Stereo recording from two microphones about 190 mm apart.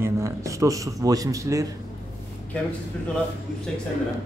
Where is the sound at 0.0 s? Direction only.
15° right (ahead or behind).